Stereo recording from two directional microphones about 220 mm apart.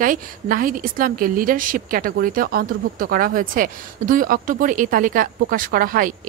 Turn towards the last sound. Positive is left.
turn(degrees=-40)  # may be behind; listen again after turning